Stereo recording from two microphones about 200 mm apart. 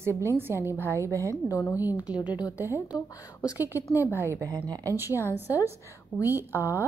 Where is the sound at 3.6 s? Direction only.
10° right (ahead or behind).